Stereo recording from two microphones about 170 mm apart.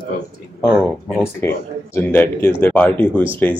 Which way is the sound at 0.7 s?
Centre (ahead or behind).